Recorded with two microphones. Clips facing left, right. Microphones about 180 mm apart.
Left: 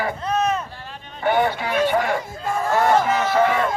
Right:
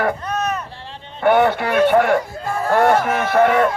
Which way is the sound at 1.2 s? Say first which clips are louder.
Right 5 dB; 60° right (ahead or behind).